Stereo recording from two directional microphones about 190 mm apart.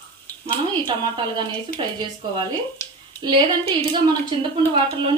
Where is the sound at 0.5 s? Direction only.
25° right (ahead or behind).